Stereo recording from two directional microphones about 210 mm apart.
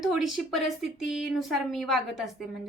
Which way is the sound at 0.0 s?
Centre (ahead or behind).